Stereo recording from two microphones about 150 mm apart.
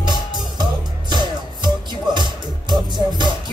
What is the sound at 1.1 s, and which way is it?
Music, 30° right (ahead or behind).